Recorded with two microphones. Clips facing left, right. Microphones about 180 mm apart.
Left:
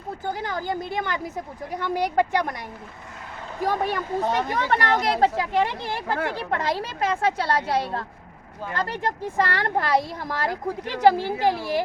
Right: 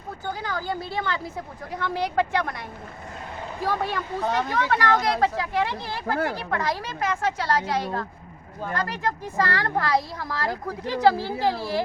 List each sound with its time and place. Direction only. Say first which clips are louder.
0.3 s speech: left 1 dB; 20° left (ahead or behind)
3.6 s speech: left 2 dB; 15° left (ahead or behind)